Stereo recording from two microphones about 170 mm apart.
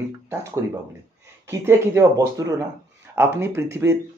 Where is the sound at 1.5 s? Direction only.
15° right (ahead or behind).